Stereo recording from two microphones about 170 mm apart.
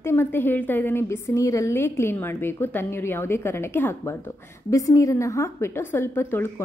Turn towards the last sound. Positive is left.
turn(degrees=15)  # may be behind; listen again after turning